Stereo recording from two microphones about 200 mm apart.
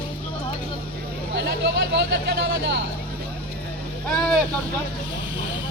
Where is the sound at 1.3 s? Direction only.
60° right (ahead or behind).